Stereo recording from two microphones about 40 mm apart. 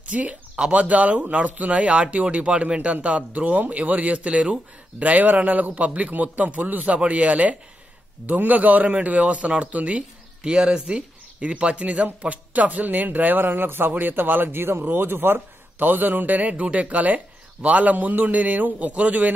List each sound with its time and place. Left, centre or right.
0.1 s a man's voice: right
10.4 s speech: right
15.0 s a man's voice: right